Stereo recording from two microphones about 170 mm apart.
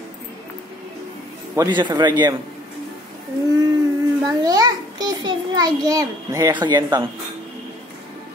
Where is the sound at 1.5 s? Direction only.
25° right (ahead or behind).